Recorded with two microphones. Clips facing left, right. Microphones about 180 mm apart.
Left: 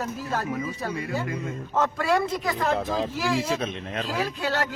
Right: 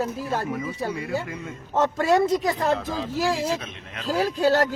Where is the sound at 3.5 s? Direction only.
30° left (ahead or behind).